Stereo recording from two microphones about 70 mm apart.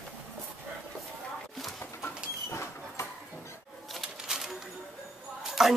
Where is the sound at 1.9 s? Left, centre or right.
Left.